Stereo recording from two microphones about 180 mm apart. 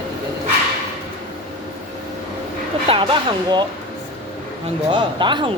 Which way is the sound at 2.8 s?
25° right (ahead or behind).